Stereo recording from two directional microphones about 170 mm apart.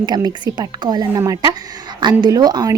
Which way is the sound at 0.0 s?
25° right (ahead or behind).